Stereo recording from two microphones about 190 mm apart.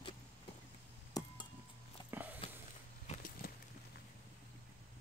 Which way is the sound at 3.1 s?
45° left (ahead or behind).